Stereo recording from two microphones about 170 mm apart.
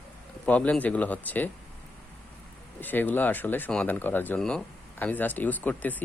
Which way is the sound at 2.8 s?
10° left (ahead or behind).